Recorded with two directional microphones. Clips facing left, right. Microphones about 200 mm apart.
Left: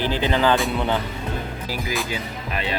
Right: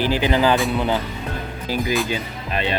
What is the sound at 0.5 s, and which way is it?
Speech, centre (ahead or behind).